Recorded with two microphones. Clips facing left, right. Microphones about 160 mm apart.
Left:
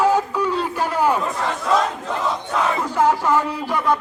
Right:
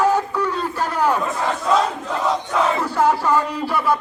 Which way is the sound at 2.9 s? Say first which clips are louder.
Left 1 dB; 10° left (ahead or behind).